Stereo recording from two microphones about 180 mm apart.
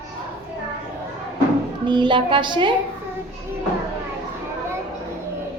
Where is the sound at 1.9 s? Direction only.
25° right (ahead or behind).